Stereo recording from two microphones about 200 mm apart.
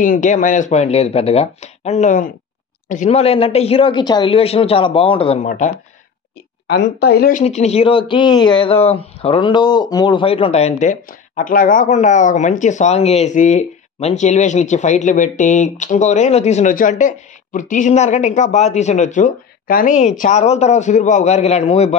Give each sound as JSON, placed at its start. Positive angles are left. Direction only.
{"t": 0.0, "sound": "speech", "side_deg": 40}
{"t": 6.7, "sound": "a woman's voice", "side_deg": 55}
{"t": 7.4, "sound": "speech", "side_deg": 30}